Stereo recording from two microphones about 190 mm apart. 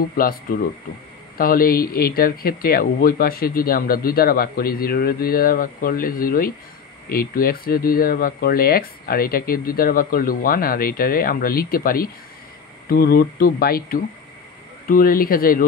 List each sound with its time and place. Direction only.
0.0 s speech: 50° left (ahead or behind)